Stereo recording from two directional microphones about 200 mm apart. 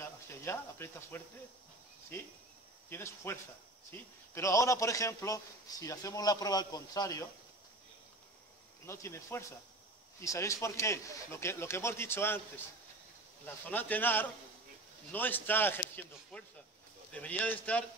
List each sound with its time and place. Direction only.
0.0 s speech: 10° left (ahead or behind)
2.9 s a man's voice: 10° left (ahead or behind)
8.8 s a man's voice: 15° left (ahead or behind)
13.7 s a man's voice: 10° left (ahead or behind)